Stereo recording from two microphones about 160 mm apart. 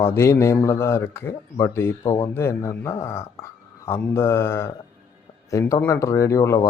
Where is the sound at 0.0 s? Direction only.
15° left (ahead or behind).